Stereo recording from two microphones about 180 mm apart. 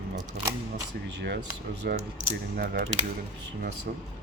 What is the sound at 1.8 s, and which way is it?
Speech, 60° right (ahead or behind).